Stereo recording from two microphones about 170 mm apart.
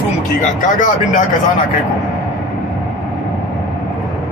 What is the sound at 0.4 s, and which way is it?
Speech, 50° left (ahead or behind).